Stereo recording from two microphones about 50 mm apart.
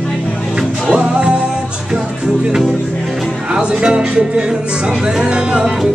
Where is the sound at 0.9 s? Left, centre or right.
Centre.